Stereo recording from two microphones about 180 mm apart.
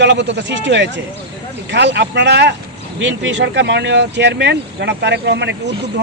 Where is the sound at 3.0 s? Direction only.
80° right.